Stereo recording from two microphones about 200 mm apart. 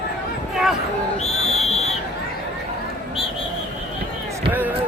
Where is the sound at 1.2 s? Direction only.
30° left (ahead or behind).